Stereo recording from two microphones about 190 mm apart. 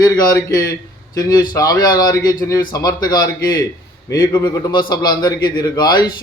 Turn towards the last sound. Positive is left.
turn(degrees=20)  # may be behind; listen again after turning